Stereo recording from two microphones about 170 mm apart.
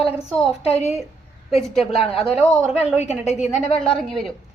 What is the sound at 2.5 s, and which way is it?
Speech, 5° right (ahead or behind).